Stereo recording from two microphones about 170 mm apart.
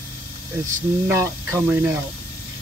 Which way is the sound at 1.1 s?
15° right (ahead or behind).